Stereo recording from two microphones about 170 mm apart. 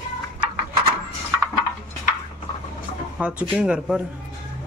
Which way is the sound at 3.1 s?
5° right (ahead or behind).